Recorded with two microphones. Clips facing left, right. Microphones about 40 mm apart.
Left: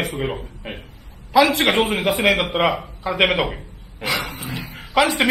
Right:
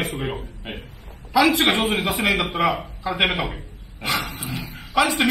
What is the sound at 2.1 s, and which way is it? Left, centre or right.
Speech, left.